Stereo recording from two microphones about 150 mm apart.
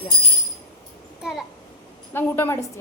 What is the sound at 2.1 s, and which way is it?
Speech, 15° left (ahead or behind).